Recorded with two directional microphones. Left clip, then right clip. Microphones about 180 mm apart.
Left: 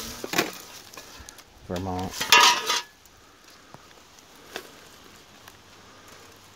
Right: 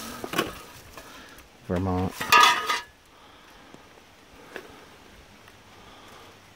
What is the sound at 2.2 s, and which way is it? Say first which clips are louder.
Stir: even; 15° left (ahead or behind).